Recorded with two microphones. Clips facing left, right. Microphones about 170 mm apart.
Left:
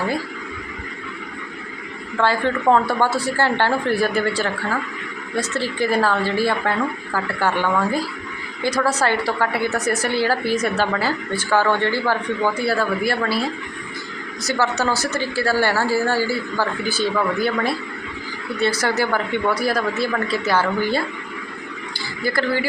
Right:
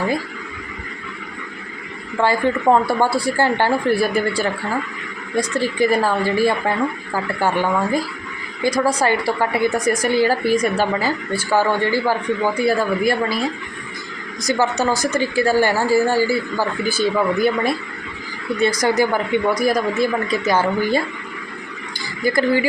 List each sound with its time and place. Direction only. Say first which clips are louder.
2.1 s a woman's voice: right 2 dB; 15° right (ahead or behind)
14.4 s a woman's voice: right 2 dB; 15° right (ahead or behind)
18.8 s a woman's voice: right 3 dB; 15° right (ahead or behind)
22.2 s a woman's voice: right 4 dB; 15° right (ahead or behind)